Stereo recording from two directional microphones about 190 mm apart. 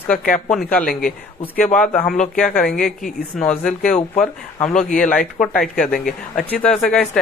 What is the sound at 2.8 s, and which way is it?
A woman's voice, 45° left (ahead or behind).